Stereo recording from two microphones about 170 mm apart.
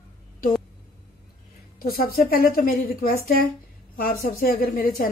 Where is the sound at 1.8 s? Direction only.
60° left (ahead or behind).